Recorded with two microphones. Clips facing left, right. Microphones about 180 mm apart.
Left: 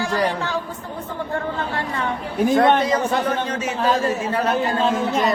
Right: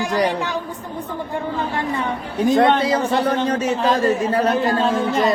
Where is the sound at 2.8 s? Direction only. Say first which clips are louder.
Right 2 dB; 35° right (ahead or behind).